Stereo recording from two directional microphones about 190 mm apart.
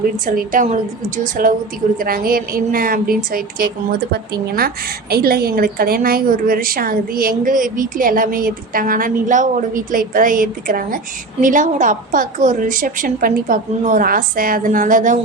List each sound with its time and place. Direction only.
0.3 s a woman's voice: 45° right (ahead or behind)